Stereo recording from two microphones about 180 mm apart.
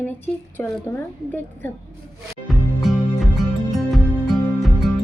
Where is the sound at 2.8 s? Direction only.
Centre (ahead or behind).